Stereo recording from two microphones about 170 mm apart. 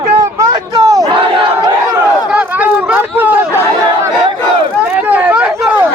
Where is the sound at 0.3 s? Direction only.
20° right (ahead or behind).